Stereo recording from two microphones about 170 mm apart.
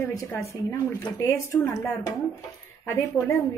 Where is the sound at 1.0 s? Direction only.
15° left (ahead or behind).